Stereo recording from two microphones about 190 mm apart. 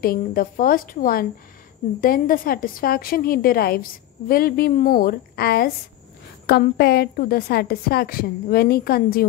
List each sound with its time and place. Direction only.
0.0 s a woman's voice: 50° left (ahead or behind)